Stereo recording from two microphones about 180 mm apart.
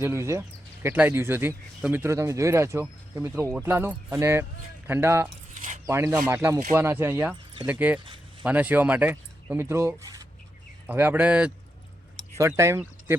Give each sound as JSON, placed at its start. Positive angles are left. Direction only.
{"t": 0.0, "sound": "speech", "side_deg": -15}
{"t": 5.5, "sound": "mechanisms", "side_deg": -45}
{"t": 5.8, "sound": "speech", "side_deg": -20}
{"t": 8.0, "sound": "a sound", "side_deg": -30}
{"t": 8.4, "sound": "speech", "side_deg": -10}